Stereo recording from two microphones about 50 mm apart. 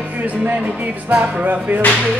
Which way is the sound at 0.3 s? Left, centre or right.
Right.